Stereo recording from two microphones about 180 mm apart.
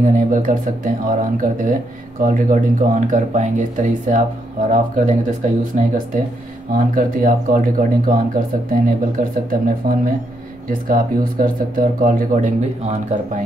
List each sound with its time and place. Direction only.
0.0 s speech: 45° right (ahead or behind)